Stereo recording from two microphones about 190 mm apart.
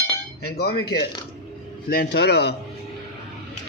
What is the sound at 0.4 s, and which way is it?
Speech, 55° left (ahead or behind).